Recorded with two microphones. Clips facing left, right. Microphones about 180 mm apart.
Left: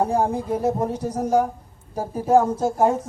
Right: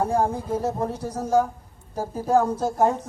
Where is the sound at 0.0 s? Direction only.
10° left (ahead or behind).